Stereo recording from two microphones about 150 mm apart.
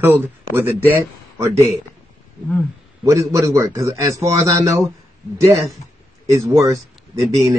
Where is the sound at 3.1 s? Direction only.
20° right (ahead or behind).